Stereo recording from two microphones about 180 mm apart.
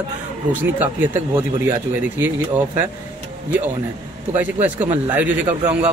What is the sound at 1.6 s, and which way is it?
Speech, 10° right (ahead or behind).